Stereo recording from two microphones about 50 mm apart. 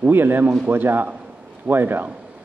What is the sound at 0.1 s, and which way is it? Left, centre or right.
A man's voice, right.